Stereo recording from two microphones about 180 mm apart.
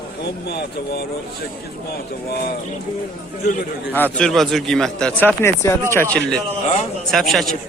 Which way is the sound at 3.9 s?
10° left (ahead or behind).